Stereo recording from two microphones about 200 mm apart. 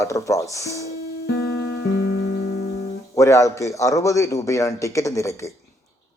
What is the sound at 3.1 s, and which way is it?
A man's voice, 15° left (ahead or behind).